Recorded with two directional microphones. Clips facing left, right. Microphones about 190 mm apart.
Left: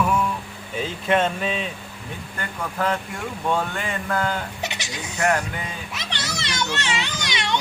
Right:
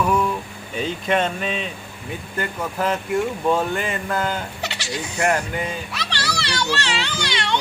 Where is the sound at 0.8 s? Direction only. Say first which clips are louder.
Even; centre (ahead or behind).